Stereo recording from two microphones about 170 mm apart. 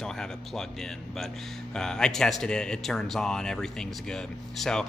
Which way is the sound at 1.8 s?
5° left (ahead or behind).